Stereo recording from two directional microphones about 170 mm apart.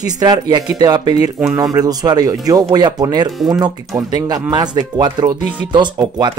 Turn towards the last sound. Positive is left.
turn(degrees=-25)  # may be behind; listen again after turning